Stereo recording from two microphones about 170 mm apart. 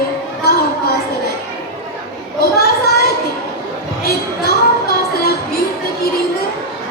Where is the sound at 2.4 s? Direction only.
65° left (ahead or behind).